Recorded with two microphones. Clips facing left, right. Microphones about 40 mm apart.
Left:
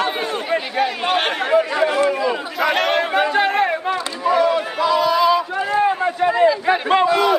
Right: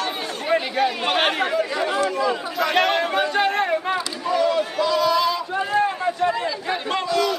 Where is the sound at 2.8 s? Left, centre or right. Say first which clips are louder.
Left 1 dB; centre.